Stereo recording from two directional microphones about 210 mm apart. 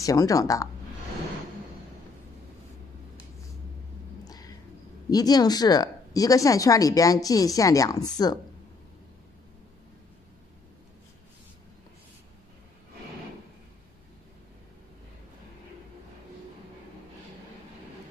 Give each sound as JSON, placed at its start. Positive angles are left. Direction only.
{"t": 0.0, "sound": "a woman's voice", "side_deg": 15}
{"t": 4.2, "sound": "music", "side_deg": 15}
{"t": 5.1, "sound": "a woman's voice", "side_deg": 20}